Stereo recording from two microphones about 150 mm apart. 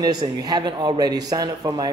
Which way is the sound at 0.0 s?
25° right (ahead or behind).